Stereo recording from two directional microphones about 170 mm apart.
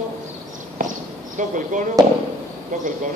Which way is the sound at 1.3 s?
50° right (ahead or behind).